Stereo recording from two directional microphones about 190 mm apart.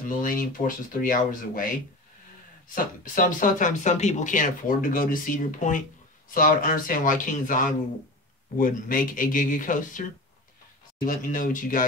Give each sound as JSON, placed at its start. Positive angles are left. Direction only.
{"t": 0.2, "sound": "speech", "side_deg": 45}
{"t": 2.7, "sound": "speech", "side_deg": 45}
{"t": 11.1, "sound": "speech", "side_deg": 45}